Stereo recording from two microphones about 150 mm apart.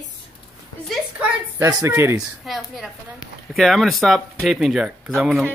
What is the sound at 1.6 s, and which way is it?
Speech, 20° right (ahead or behind).